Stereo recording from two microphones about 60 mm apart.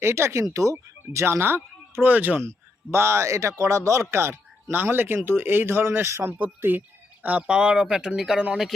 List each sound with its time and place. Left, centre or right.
0.0 s speech: right
2.4 s speech: right
4.1 s speech: right
4.7 s speech: right
6.6 s music: right
7.4 s speech: centre